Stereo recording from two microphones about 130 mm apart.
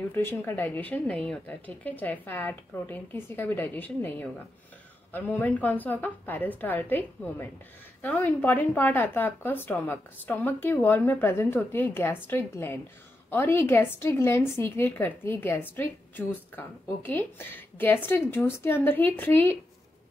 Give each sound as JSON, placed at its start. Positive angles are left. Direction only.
{"t": 0.1, "sound": "a woman's voice", "side_deg": 15}